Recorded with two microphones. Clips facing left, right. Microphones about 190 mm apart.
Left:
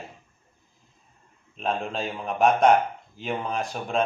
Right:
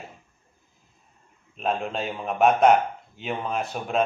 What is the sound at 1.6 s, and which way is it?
Speech, centre (ahead or behind).